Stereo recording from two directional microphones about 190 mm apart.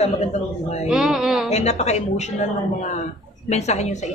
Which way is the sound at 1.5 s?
35° left (ahead or behind).